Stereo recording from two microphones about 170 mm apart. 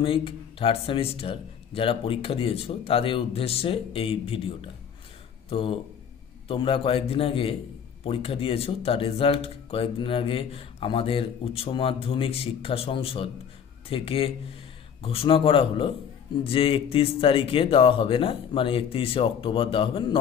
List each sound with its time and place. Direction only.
0.0 s speech: 30° left (ahead or behind)